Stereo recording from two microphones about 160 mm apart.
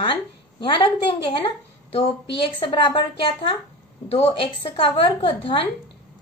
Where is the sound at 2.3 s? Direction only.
35° left (ahead or behind).